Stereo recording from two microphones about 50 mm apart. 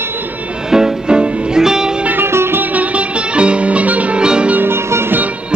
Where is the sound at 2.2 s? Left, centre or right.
Right.